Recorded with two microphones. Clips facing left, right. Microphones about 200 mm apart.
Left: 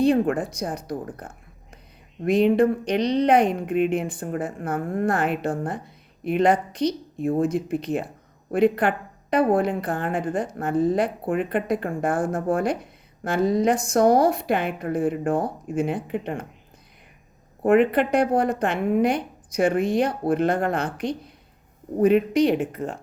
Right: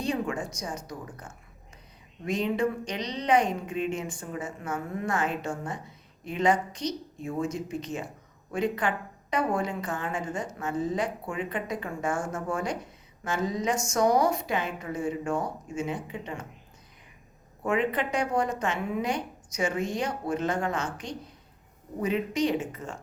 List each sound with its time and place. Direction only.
0.0 s a woman's voice: 60° left (ahead or behind)
17.7 s a woman's voice: 60° left (ahead or behind)